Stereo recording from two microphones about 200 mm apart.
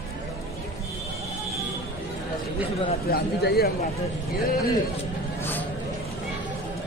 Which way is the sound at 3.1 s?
50° left (ahead or behind).